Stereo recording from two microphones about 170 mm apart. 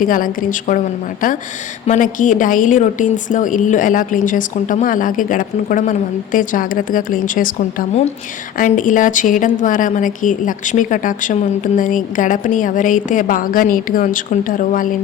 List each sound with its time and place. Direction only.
0.0 s a woman's voice: 55° left (ahead or behind)
1.9 s a woman's voice: 50° left (ahead or behind)